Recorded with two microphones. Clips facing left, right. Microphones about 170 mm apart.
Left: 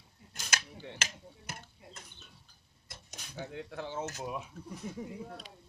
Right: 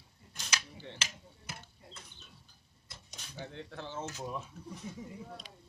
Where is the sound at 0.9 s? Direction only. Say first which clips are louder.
Left 3 dB; 45° left (ahead or behind).